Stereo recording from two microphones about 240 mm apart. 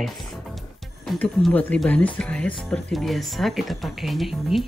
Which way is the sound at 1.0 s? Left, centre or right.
Centre.